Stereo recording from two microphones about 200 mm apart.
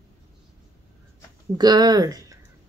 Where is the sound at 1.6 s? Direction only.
20° right (ahead or behind).